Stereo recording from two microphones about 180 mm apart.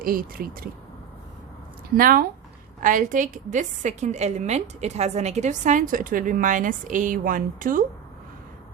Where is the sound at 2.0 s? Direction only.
50° right (ahead or behind).